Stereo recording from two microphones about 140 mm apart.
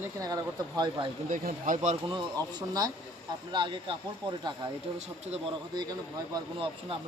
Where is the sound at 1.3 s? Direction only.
70° right (ahead or behind).